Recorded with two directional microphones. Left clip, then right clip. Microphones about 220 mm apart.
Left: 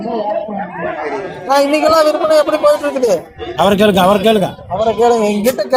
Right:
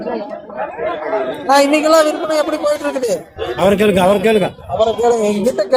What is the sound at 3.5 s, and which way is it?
Speech, 35° left (ahead or behind).